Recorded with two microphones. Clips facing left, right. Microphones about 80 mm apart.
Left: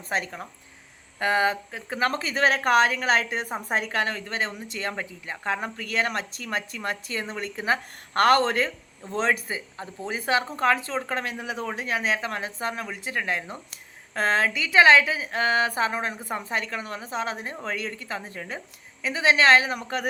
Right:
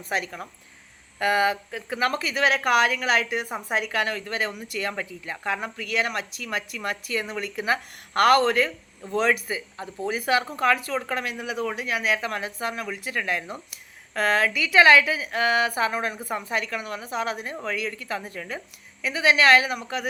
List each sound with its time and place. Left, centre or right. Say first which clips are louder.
0.1 s speech: even; left